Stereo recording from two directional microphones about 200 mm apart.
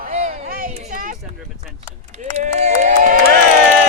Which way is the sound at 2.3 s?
35° right (ahead or behind).